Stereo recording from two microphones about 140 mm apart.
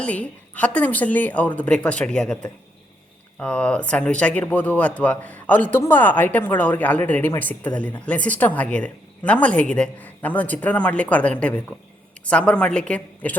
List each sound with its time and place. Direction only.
0.0 s speech: 10° left (ahead or behind)